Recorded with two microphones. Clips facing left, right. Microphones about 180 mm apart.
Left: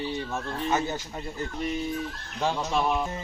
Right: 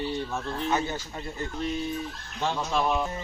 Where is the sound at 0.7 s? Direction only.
15° left (ahead or behind).